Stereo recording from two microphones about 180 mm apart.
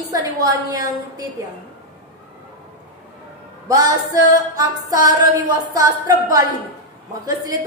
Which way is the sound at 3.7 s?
20° right (ahead or behind).